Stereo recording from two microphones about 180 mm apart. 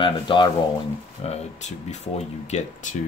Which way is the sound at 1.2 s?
40° left (ahead or behind).